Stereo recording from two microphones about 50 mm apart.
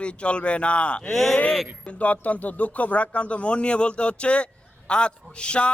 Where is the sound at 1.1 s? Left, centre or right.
Centre.